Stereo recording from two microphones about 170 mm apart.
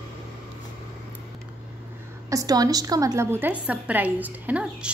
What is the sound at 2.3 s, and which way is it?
A woman's voice, 20° right (ahead or behind).